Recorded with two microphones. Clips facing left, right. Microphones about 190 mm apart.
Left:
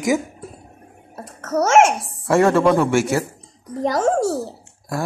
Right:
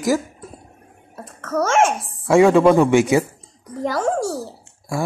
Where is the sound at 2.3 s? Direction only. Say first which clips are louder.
Right 3 dB; 15° right (ahead or behind).